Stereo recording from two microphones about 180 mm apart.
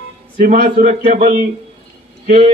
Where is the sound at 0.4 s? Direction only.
45° right (ahead or behind).